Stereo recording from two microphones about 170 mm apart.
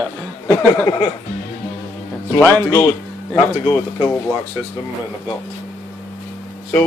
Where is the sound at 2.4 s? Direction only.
10° left (ahead or behind).